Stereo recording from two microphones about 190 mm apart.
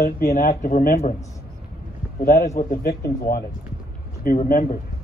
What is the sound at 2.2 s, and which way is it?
Speech, 50° left (ahead or behind).